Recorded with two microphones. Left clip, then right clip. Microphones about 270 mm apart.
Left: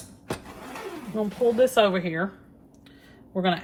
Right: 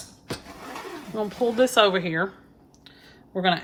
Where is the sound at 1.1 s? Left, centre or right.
Right.